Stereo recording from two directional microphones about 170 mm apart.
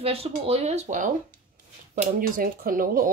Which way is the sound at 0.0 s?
35° right (ahead or behind).